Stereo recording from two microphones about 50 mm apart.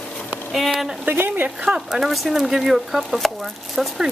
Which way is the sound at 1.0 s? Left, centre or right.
Right.